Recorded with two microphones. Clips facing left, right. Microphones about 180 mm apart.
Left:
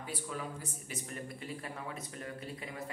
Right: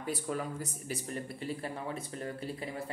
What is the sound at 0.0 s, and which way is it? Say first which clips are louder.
Speech: right 5 dB; 45° right (ahead or behind).